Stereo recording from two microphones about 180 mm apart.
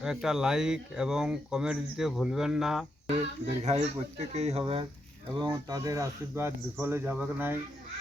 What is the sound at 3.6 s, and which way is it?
Speech, 40° right (ahead or behind).